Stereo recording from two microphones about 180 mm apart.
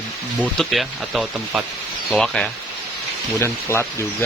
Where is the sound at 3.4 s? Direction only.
15° left (ahead or behind).